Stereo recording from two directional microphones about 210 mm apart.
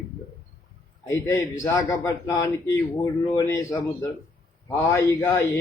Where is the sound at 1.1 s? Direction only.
15° left (ahead or behind).